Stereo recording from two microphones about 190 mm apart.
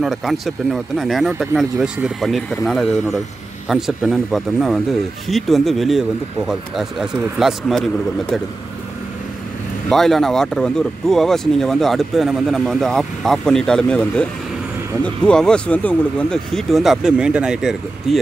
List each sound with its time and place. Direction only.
0.0 s speech: centre (ahead or behind)
9.8 s speech: centre (ahead or behind)